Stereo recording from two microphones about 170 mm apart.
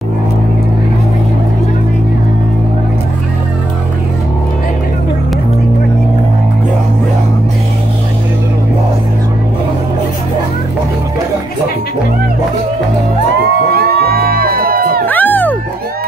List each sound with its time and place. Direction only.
13.7 s music: 65° right (ahead or behind)
15.0 s music: 10° left (ahead or behind)